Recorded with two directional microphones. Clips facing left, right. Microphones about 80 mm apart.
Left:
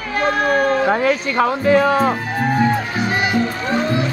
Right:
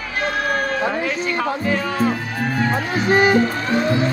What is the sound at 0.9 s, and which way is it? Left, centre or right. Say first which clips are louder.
Speech: left 5 dB; left.